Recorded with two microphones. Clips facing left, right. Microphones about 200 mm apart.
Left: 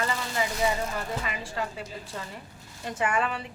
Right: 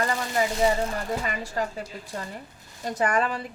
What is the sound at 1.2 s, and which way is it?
Speech, 40° right (ahead or behind).